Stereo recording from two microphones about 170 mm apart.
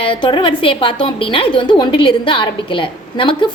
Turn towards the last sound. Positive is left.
turn(degrees=30)  # may be behind; listen again after turning